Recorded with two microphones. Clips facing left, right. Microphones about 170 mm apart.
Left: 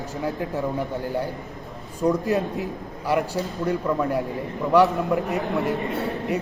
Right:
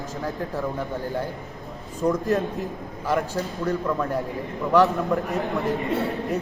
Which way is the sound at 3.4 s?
15° left (ahead or behind).